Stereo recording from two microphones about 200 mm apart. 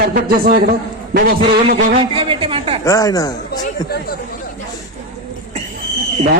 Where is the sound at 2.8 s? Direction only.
15° left (ahead or behind).